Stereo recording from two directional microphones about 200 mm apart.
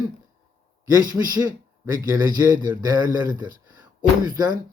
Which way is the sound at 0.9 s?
20° right (ahead or behind).